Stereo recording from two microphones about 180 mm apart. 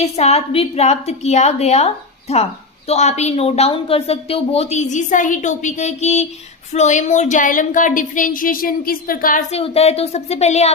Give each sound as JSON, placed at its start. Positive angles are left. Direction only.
{"t": 0.0, "sound": "a woman's voice", "side_deg": 35}